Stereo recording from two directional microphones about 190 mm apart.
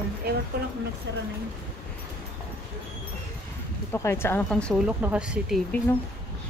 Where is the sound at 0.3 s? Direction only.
55° right (ahead or behind).